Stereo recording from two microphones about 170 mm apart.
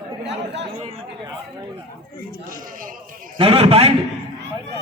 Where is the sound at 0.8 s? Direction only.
35° right (ahead or behind).